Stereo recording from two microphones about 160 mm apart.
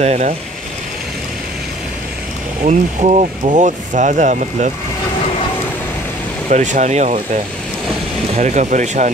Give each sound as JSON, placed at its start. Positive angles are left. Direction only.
{"t": 0.0, "sound": "speech", "side_deg": -45}
{"t": 2.6, "sound": "speech", "side_deg": -45}
{"t": 6.5, "sound": "speech", "side_deg": -50}
{"t": 8.4, "sound": "speech", "side_deg": -50}